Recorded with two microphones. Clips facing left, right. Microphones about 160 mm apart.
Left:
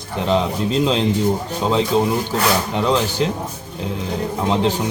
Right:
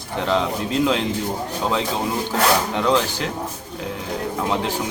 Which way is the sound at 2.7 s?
20° left (ahead or behind).